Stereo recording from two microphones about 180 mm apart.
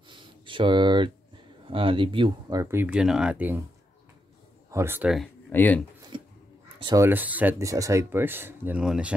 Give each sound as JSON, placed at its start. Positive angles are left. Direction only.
{"t": 0.1, "sound": "a sound", "side_deg": -25}
{"t": 1.7, "sound": "speech", "side_deg": -30}
{"t": 4.6, "sound": "speech", "side_deg": -15}
{"t": 5.5, "sound": "speech", "side_deg": 10}
{"t": 6.1, "sound": "a sound", "side_deg": -30}
{"t": 6.8, "sound": "speech", "side_deg": -25}
{"t": 7.1, "sound": "speech", "side_deg": -10}